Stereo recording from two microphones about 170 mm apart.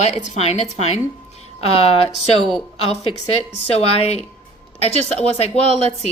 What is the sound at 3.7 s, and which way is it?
A woman's voice, 35° left (ahead or behind).